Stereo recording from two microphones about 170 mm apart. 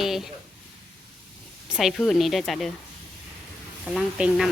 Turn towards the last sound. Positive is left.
turn(degrees=-5)  # may be behind; listen again after turning